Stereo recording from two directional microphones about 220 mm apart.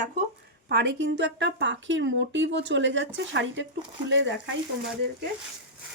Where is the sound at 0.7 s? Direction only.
50° right (ahead or behind).